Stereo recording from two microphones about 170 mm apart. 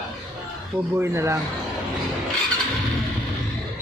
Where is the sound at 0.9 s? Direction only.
15° right (ahead or behind).